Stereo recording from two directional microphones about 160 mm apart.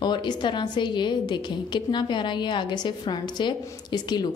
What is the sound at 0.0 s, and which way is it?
A woman's voice, 30° left (ahead or behind).